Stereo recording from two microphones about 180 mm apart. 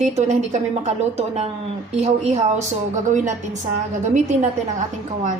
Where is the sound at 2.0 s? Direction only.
40° right (ahead or behind).